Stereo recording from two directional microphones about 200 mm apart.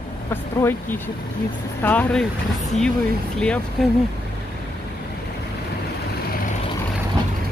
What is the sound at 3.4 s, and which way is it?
Speech, 5° left (ahead or behind).